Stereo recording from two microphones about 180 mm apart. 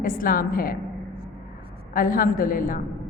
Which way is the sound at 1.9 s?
50° left (ahead or behind).